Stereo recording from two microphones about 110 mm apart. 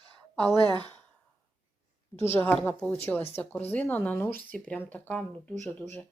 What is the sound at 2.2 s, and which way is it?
Speech, 20° left (ahead or behind).